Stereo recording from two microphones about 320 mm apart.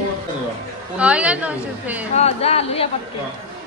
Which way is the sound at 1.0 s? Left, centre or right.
Centre.